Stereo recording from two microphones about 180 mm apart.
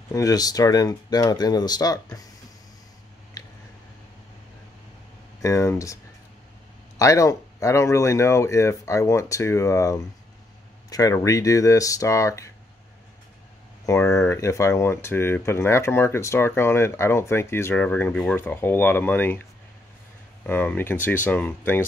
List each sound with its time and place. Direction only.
0.1 s speech: 20° left (ahead or behind)
5.4 s speech: 15° left (ahead or behind)
7.0 s speech: 15° left (ahead or behind)
13.8 s speech: 15° left (ahead or behind)
20.4 s speech: 10° left (ahead or behind)